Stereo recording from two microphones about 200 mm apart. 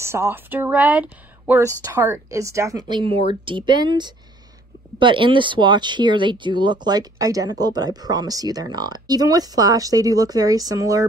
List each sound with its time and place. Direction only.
0.0 s a woman's voice: 15° right (ahead or behind)